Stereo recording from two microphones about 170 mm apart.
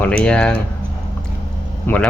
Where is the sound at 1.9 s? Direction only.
10° left (ahead or behind).